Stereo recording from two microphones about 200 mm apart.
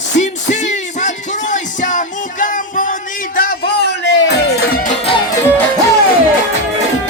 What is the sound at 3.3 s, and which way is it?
Music, 50° left (ahead or behind).